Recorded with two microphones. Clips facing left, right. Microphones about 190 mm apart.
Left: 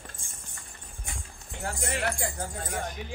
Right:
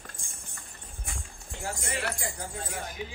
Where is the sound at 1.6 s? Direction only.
55° left (ahead or behind).